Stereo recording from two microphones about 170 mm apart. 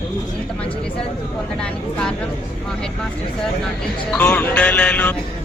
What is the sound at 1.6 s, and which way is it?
Speech, 5° left (ahead or behind).